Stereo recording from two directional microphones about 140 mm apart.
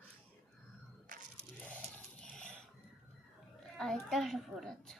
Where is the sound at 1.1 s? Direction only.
70° right (ahead or behind).